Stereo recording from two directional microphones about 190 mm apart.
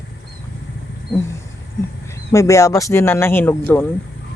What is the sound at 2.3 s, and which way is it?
Speech, 15° left (ahead or behind).